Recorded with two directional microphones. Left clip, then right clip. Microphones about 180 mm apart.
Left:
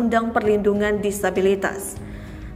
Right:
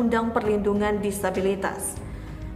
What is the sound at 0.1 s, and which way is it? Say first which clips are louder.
A woman's voice: left 4 dB; 10° left (ahead or behind).